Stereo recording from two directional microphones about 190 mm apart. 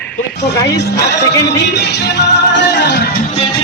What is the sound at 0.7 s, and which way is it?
Speech, 60° left (ahead or behind).